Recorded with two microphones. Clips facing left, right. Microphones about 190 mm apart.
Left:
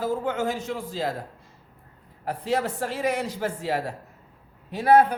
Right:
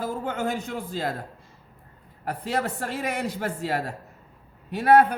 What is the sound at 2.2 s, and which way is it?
A man's voice, 60° right (ahead or behind).